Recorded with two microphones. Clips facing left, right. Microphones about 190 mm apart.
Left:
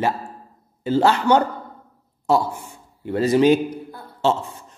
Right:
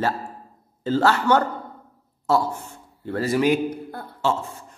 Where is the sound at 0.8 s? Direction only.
15° left (ahead or behind).